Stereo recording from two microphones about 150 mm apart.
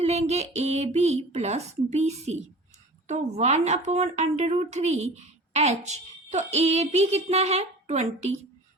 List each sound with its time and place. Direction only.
0.0 s speech: 45° right (ahead or behind)